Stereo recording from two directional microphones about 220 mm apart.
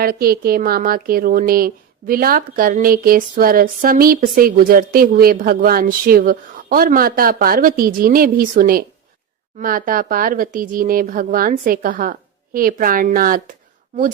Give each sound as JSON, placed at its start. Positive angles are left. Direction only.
{"t": 0.0, "sound": "a woman's voice", "side_deg": -45}